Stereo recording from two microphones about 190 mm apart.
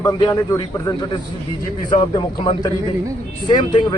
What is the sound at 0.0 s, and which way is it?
A man's voice, 20° left (ahead or behind).